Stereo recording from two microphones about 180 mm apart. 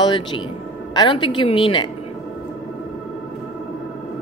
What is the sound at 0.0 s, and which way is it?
A woman's voice, 25° left (ahead or behind).